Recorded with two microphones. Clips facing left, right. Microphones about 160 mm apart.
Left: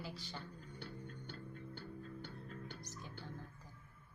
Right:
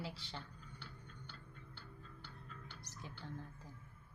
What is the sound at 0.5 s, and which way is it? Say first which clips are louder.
Music: left 6 dB; 45° left (ahead or behind).